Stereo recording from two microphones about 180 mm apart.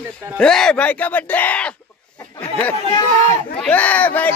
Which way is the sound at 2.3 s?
10° left (ahead or behind).